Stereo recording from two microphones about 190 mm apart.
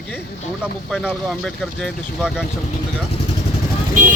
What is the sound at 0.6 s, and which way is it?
Speech, centre (ahead or behind).